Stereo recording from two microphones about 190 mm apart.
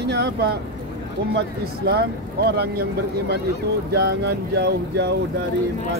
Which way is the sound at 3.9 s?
60° right (ahead or behind).